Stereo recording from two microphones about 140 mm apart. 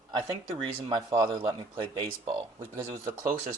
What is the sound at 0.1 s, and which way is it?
Speech, 30° right (ahead or behind).